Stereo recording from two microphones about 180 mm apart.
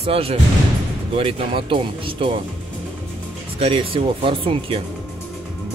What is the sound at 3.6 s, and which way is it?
Speech, 30° right (ahead or behind).